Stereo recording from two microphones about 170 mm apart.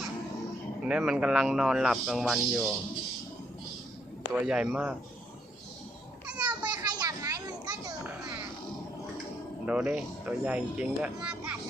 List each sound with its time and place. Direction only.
0.9 s speech: 5° right (ahead or behind)
4.4 s speech: 5° right (ahead or behind)
6.2 s a sound: 5° right (ahead or behind)
6.6 s children playing: 25° right (ahead or behind)
9.6 s speech: 5° right (ahead or behind)